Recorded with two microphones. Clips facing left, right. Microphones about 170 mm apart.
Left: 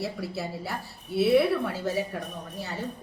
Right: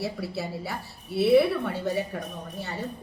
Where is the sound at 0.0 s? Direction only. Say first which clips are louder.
Right 1 dB; centre (ahead or behind).